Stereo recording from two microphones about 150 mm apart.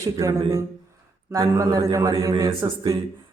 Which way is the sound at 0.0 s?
20° right (ahead or behind).